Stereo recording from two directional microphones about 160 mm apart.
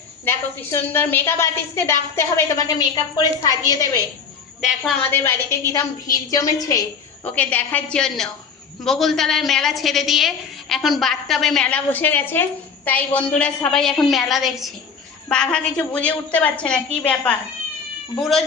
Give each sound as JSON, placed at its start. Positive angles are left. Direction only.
{"t": 0.3, "sound": "a woman's voice", "side_deg": 15}
{"t": 4.6, "sound": "a woman's voice", "side_deg": 0}
{"t": 5.1, "sound": "a woman's voice", "side_deg": 15}
{"t": 7.3, "sound": "a woman's voice", "side_deg": 10}